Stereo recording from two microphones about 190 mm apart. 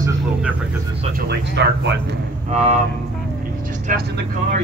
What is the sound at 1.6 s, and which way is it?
Speech, 65° right (ahead or behind).